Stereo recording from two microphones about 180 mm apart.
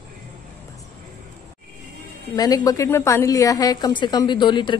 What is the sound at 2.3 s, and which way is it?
A woman's voice, 20° left (ahead or behind).